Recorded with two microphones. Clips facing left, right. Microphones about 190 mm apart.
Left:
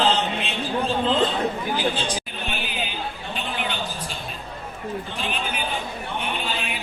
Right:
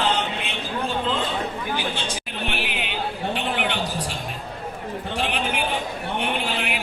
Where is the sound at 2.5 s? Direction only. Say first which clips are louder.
Right 2 dB; 70° right (ahead or behind).